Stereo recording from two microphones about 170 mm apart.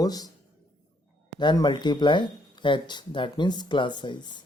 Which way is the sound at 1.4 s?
25° left (ahead or behind).